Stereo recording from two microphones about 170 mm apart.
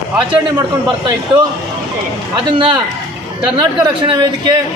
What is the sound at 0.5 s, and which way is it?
Speech, 20° right (ahead or behind).